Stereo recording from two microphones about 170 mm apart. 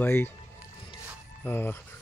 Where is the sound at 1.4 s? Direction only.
10° left (ahead or behind).